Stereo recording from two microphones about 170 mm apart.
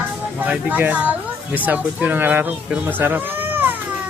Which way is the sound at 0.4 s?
10° right (ahead or behind).